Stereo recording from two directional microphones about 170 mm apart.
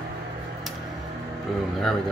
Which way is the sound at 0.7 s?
Centre (ahead or behind).